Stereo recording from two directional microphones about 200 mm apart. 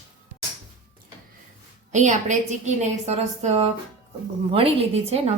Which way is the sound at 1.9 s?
35° right (ahead or behind).